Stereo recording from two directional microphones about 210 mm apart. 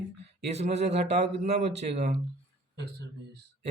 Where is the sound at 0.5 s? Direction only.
30° right (ahead or behind).